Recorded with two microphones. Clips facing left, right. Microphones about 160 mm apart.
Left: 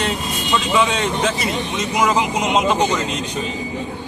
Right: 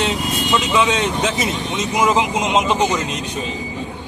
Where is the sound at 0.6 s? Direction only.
20° right (ahead or behind).